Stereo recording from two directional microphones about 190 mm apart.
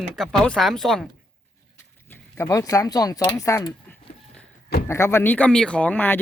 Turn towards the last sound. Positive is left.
turn(degrees=10)  # may be behind; listen again after turning